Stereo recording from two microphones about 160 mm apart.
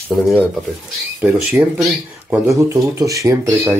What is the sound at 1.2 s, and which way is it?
Speech, 10° right (ahead or behind).